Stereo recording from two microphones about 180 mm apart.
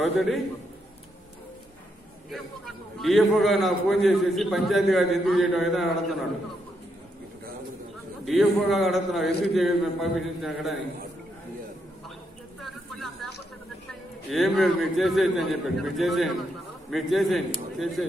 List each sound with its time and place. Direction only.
0.0 s a man's voice: centre (ahead or behind)
2.3 s a man's voice: centre (ahead or behind)
8.3 s a man's voice: centre (ahead or behind)
12.6 s a sound: centre (ahead or behind)
14.3 s a man's voice: centre (ahead or behind)